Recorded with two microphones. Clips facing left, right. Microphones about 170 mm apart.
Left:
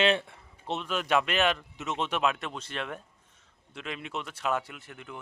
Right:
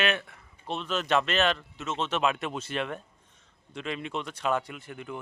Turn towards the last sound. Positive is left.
turn(degrees=0)  # may be behind; listen again after turning